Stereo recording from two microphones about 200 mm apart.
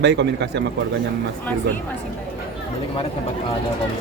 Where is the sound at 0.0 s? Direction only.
60° right (ahead or behind).